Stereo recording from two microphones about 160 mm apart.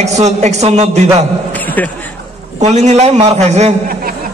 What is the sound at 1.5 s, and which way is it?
Speech, 10° left (ahead or behind).